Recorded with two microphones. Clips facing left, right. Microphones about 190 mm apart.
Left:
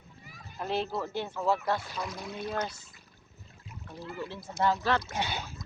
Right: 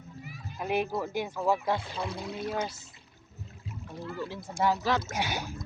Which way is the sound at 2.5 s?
5° right (ahead or behind).